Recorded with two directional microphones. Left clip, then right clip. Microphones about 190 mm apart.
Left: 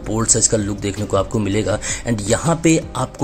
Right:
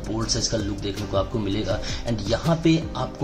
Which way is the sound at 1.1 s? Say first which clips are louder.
Left 7 dB; 45° left (ahead or behind).